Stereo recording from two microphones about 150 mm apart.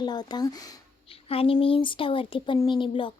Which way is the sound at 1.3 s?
40° left (ahead or behind).